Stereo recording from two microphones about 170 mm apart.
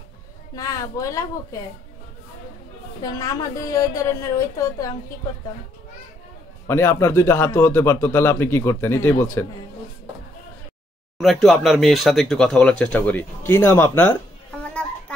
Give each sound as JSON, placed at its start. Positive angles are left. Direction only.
{"t": 0.6, "sound": "a woman's voice", "side_deg": 20}
{"t": 3.0, "sound": "a woman's voice", "side_deg": 20}
{"t": 6.7, "sound": "a man's voice", "side_deg": 15}
{"t": 11.4, "sound": "a man's voice", "side_deg": 0}
{"t": 14.6, "sound": "children playing", "side_deg": 10}